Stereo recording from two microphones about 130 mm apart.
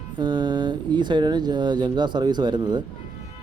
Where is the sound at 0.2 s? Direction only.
35° right (ahead or behind).